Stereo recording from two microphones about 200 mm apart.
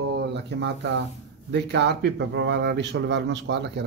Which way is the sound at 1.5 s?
60° right (ahead or behind).